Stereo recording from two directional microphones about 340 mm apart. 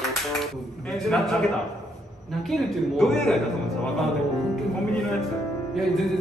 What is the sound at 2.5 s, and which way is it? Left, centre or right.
Music, centre.